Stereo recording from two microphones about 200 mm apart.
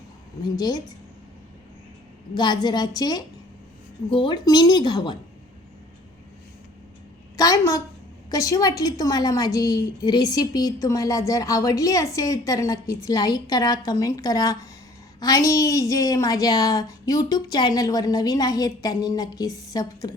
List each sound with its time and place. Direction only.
0.5 s a woman's voice: 20° left (ahead or behind)
2.3 s a woman's voice: 20° left (ahead or behind)
7.3 s a woman's voice: 15° left (ahead or behind)